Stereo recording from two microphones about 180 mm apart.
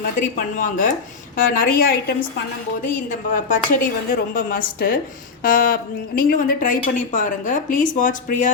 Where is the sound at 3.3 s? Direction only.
45° left (ahead or behind).